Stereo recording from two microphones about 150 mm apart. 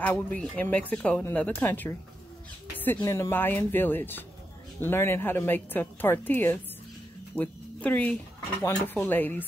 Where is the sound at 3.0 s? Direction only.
20° left (ahead or behind).